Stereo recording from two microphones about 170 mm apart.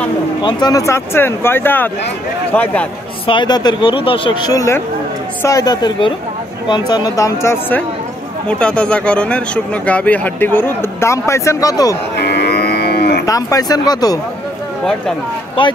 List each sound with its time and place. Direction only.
0.4 s speech: 25° left (ahead or behind); by 2.9 s 10° left (ahead or behind)
3.3 s speech: 25° left (ahead or behind)
12.2 s moo: 75° left (ahead or behind)
13.2 s speech: 20° left (ahead or behind)